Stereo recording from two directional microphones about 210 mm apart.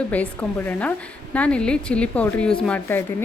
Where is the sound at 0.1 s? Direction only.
5° left (ahead or behind).